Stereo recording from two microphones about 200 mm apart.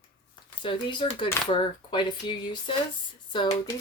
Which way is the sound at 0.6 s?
25° left (ahead or behind).